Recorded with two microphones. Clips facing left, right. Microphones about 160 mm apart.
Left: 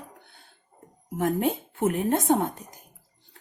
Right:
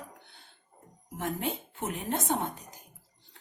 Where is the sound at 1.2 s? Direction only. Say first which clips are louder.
Left 8 dB; 50° left (ahead or behind).